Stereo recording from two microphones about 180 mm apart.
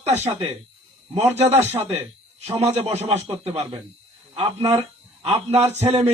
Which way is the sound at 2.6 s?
35° right (ahead or behind).